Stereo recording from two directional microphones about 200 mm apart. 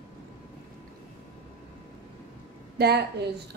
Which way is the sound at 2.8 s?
50° right (ahead or behind).